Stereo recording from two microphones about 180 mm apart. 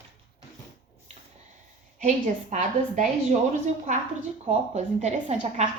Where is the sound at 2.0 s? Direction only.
40° right (ahead or behind).